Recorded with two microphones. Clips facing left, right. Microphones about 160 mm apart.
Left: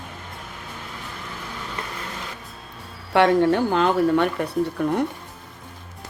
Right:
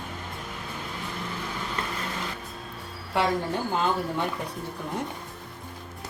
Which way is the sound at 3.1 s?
75° left (ahead or behind).